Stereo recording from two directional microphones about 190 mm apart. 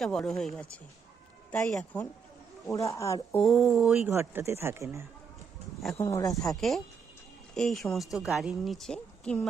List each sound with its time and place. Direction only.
0.0 s a woman's voice: centre (ahead or behind)
3.4 s speech: centre (ahead or behind)
6.0 s speech: 15° left (ahead or behind)
6.4 s a woman's voice: centre (ahead or behind)